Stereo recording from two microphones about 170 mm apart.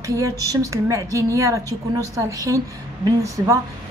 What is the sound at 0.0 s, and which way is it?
Speech, 20° right (ahead or behind).